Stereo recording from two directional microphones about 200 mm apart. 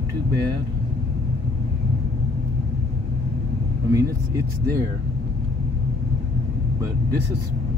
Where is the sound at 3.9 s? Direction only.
15° right (ahead or behind).